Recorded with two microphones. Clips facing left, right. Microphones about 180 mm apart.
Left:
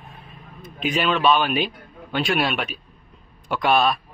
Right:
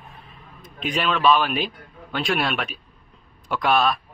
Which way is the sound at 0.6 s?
Centre (ahead or behind).